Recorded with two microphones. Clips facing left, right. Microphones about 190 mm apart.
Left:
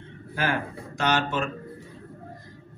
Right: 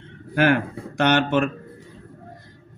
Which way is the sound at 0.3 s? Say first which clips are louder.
Right 9 dB; 65° right (ahead or behind).